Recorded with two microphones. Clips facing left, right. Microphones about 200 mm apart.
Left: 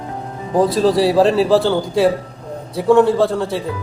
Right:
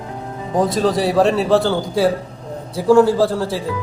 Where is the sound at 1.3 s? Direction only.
Centre (ahead or behind).